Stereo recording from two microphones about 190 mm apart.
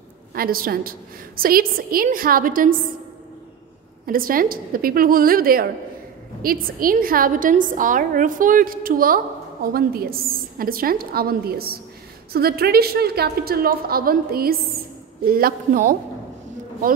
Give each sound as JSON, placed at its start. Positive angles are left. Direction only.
{"t": 0.3, "sound": "a woman's voice", "side_deg": -50}
{"t": 4.0, "sound": "a woman's voice", "side_deg": -50}